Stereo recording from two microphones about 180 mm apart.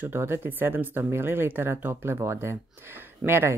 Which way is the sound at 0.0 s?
10° right (ahead or behind).